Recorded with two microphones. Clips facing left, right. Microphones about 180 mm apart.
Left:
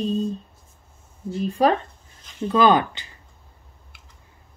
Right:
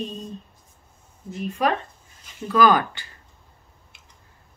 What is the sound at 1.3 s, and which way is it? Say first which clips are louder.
Speech: left 4 dB; 35° left (ahead or behind).